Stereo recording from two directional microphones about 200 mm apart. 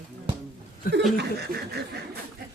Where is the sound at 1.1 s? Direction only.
55° right (ahead or behind).